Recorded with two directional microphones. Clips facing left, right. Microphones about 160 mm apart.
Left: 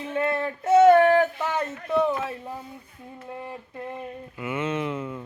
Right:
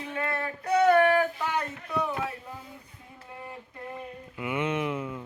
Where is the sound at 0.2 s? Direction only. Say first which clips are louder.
Left 7 dB; 25° left (ahead or behind).